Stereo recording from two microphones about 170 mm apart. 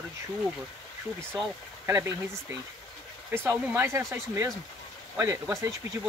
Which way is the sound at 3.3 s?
15° right (ahead or behind).